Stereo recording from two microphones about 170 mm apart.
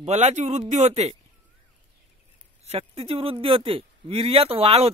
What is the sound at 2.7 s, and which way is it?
Speech, 35° right (ahead or behind).